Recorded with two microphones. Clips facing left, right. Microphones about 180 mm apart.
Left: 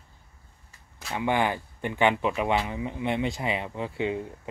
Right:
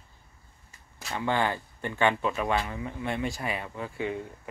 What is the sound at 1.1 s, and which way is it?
Speech, 15° left (ahead or behind).